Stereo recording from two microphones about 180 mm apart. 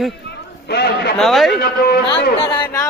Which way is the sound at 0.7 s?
65° left (ahead or behind).